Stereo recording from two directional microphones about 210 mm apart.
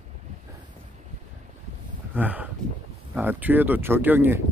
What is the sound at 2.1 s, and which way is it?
Speech, 10° right (ahead or behind).